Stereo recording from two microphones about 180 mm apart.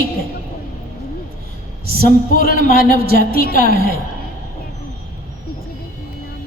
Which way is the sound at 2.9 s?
60° right (ahead or behind).